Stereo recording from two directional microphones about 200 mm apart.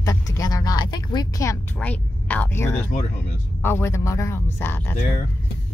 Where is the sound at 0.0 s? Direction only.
20° left (ahead or behind).